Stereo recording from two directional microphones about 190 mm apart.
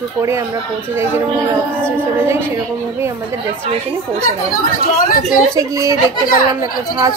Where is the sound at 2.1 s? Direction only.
15° right (ahead or behind).